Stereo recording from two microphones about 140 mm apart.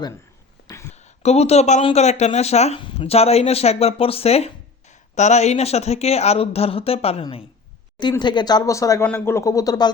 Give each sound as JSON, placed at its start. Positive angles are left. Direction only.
{"t": 0.9, "sound": "speech", "side_deg": 50}
{"t": 8.2, "sound": "speech", "side_deg": 30}